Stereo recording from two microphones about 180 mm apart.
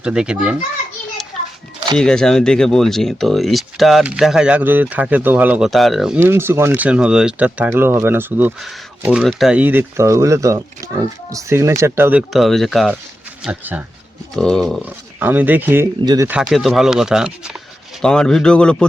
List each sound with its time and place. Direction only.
0.0 s speech: 5° right (ahead or behind)
2.0 s speech: 5° left (ahead or behind)
6.1 s speech: 15° right (ahead or behind)
12.3 s speech: centre (ahead or behind)
14.8 s speech: 10° right (ahead or behind)
16.3 s speech: centre (ahead or behind)